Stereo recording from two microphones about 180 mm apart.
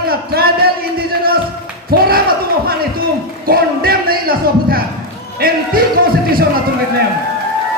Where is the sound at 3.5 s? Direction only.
55° right (ahead or behind).